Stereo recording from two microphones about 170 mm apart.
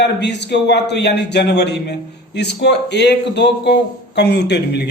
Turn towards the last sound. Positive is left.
turn(degrees=80)